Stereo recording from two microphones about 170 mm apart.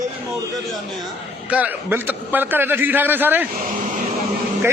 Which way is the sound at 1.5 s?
10° right (ahead or behind).